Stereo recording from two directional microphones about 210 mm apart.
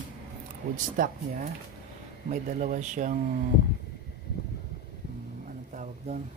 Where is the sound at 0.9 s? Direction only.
40° right (ahead or behind).